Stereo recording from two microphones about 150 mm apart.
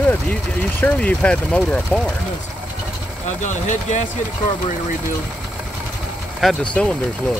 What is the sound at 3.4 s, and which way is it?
Speech, 55° left (ahead or behind).